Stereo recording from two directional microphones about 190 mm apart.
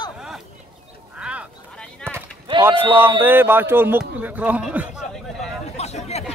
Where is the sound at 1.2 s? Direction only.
5° right (ahead or behind).